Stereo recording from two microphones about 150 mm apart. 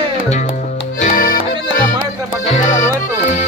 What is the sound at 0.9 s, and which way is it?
Accordion, 65° left (ahead or behind).